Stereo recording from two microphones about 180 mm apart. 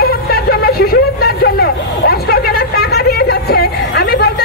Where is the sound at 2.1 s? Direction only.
55° left (ahead or behind).